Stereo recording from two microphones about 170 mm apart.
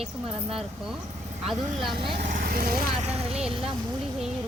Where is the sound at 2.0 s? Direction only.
35° right (ahead or behind).